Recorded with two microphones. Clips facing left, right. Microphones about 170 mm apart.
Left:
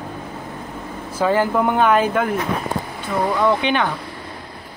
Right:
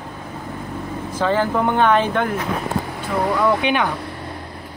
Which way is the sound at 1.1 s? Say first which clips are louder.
Left 2 dB; 10° left (ahead or behind).